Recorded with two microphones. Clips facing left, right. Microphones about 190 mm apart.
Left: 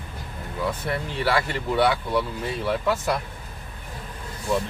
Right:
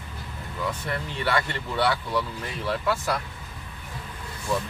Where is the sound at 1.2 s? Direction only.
10° left (ahead or behind).